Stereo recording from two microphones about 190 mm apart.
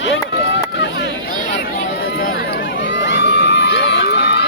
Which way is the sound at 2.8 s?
70° left (ahead or behind).